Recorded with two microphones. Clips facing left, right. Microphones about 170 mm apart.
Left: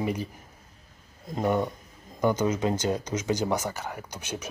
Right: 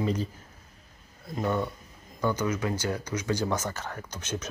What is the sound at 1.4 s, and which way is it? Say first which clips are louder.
Speech: left 3 dB; 15° left (ahead or behind).